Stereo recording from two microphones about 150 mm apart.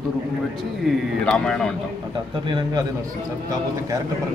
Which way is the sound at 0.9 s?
Centre (ahead or behind).